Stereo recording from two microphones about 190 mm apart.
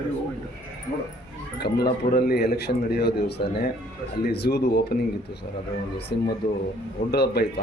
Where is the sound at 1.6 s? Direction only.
55° left (ahead or behind).